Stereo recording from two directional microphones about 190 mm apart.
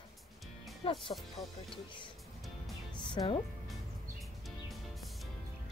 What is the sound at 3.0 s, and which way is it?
Speech, 25° left (ahead or behind).